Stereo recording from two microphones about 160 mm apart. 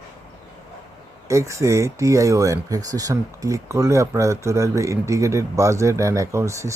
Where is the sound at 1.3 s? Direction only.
20° right (ahead or behind).